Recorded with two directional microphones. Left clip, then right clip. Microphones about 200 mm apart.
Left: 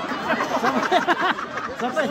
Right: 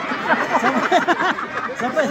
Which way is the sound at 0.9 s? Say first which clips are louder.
Right 3 dB; 25° right (ahead or behind).